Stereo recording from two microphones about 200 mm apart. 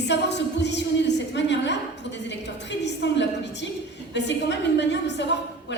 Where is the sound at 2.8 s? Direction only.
60° left (ahead or behind).